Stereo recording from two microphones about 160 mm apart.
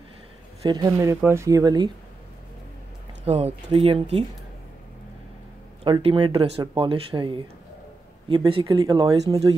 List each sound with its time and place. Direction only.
0.6 s speech: 25° right (ahead or behind)
3.3 s speech: 40° right (ahead or behind)
5.9 s speech: 30° right (ahead or behind)
8.7 s speech: 25° right (ahead or behind)